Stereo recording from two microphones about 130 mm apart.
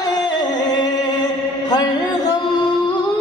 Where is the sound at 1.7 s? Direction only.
30° left (ahead or behind).